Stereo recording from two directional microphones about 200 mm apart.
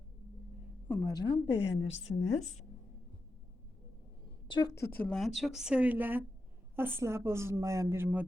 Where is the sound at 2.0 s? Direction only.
35° left (ahead or behind).